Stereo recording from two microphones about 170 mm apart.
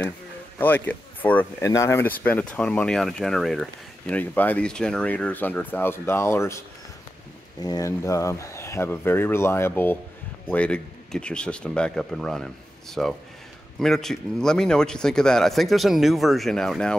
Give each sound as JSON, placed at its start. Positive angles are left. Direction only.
{"t": 0.6, "sound": "speech", "side_deg": 10}
{"t": 7.6, "sound": "speech", "side_deg": 20}